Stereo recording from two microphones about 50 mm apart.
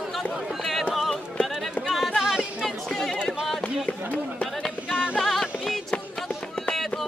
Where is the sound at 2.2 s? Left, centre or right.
Centre.